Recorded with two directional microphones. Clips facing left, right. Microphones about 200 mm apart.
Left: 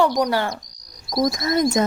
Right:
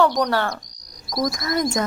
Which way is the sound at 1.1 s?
25° left (ahead or behind).